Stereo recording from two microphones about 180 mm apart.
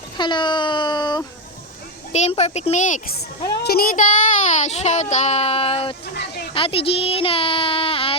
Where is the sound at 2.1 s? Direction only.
40° left (ahead or behind).